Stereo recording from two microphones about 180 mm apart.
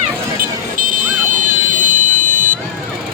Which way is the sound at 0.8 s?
45° right (ahead or behind).